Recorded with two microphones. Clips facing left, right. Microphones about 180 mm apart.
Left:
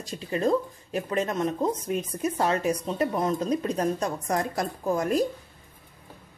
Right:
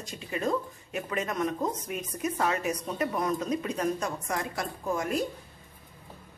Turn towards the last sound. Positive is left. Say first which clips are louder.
# left 5 dB
turn(degrees=35)  # may be behind; listen again after turning